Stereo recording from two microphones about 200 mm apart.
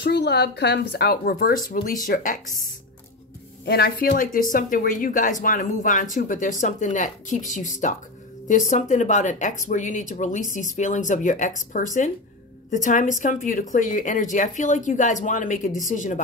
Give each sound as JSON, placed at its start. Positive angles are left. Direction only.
{"t": 0.0, "sound": "speech", "side_deg": 55}
{"t": 3.6, "sound": "speech", "side_deg": 50}